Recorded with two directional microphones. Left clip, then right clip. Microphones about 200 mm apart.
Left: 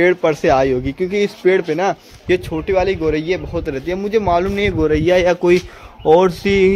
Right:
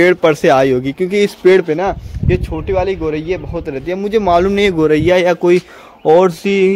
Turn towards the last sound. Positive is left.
turn(degrees=-10)  # may be behind; listen again after turning